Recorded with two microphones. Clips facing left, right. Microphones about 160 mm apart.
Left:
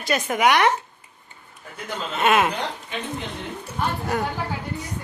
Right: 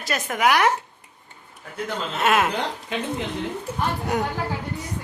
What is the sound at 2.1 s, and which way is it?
Speech, centre (ahead or behind).